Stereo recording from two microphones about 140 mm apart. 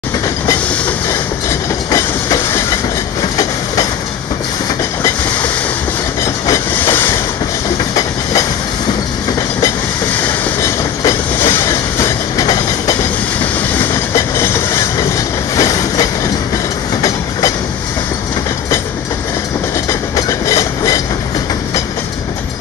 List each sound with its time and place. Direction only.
1.9 s train: 25° left (ahead or behind)
6.2 s train: 20° left (ahead or behind)
10.6 s train: 20° left (ahead or behind)
14.1 s train: 20° left (ahead or behind)
19.9 s train: 20° left (ahead or behind)